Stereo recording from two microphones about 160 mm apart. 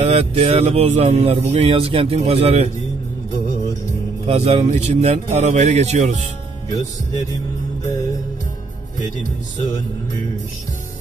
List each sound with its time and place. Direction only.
0.0 s speech: 45° right (ahead or behind)
4.3 s speech: 40° right (ahead or behind)